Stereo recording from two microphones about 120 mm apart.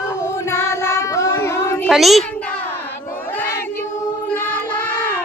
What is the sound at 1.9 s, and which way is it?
Speech, centre (ahead or behind).